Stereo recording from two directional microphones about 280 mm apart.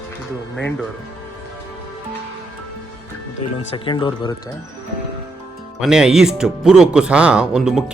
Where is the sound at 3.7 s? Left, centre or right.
Centre.